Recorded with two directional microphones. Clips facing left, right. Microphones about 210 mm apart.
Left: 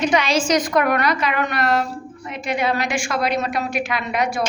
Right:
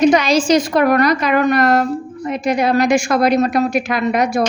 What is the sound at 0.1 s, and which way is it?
A woman's voice, 40° right (ahead or behind).